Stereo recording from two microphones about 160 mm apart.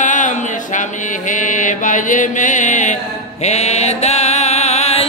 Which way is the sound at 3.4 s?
45° left (ahead or behind).